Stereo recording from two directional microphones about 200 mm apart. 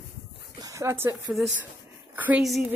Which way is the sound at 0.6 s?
15° right (ahead or behind).